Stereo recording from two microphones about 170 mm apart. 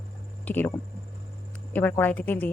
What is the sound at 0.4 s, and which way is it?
Speech, 10° left (ahead or behind).